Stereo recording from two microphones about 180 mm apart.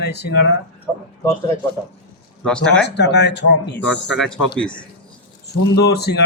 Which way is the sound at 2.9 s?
70° left (ahead or behind).